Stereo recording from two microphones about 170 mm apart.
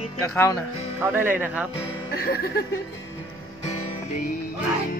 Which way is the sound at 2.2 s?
60° left (ahead or behind).